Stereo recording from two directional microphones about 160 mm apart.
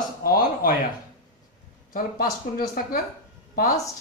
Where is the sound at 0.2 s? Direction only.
70° left (ahead or behind).